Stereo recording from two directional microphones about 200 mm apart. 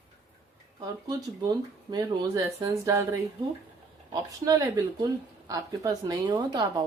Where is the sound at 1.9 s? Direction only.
20° right (ahead or behind).